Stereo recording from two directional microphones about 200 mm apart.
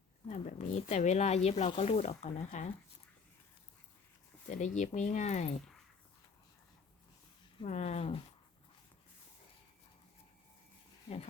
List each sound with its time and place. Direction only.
0.3 s speech: 35° left (ahead or behind)
4.4 s speech: 40° left (ahead or behind)
7.6 s speech: 35° left (ahead or behind)